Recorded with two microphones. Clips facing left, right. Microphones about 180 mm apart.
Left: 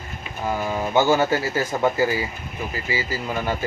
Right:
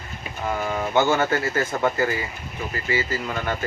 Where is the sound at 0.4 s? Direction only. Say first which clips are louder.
Left 1 dB; 10° left (ahead or behind).